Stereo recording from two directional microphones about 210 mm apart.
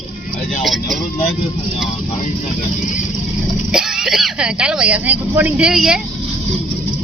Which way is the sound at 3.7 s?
Centre (ahead or behind).